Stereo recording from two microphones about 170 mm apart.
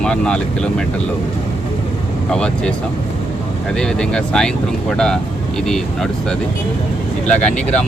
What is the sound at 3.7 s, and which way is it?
Speech, 5° left (ahead or behind).